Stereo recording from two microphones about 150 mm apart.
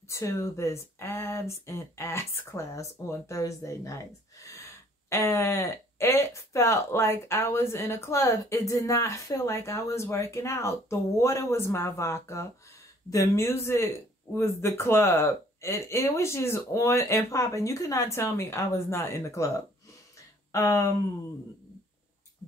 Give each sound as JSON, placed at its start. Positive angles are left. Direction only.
{"t": 0.1, "sound": "speech", "side_deg": 20}